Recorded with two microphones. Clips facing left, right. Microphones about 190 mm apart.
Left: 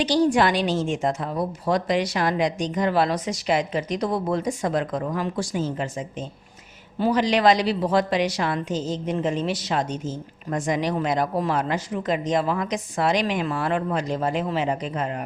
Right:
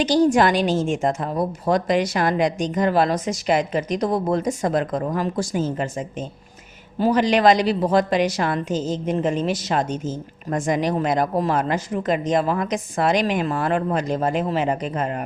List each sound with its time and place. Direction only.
0.0 s a woman's voice: 45° right (ahead or behind)